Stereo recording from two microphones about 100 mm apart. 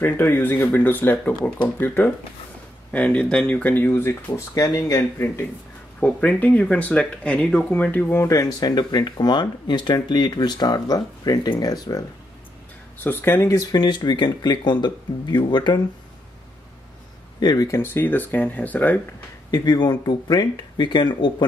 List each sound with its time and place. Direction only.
0.0 s speech: 20° left (ahead or behind)
4.6 s speech: 35° left (ahead or behind)
5.9 s speech: 15° left (ahead or behind)
8.3 s speech: 40° left (ahead or behind)
13.0 s speech: 20° left (ahead or behind); by 15.8 s 50° left (ahead or behind)
17.4 s speech: 45° left (ahead or behind)
17.6 s speech: 25° left (ahead or behind)
19.5 s speech: 45° left (ahead or behind)